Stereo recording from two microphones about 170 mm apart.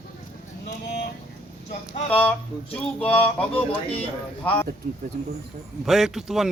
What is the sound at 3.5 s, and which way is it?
Speech, 35° left (ahead or behind).